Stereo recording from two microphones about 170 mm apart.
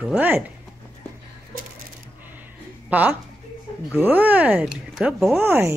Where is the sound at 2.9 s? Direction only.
10° right (ahead or behind).